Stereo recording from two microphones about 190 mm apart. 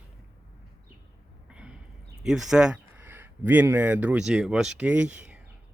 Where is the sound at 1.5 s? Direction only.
5° right (ahead or behind).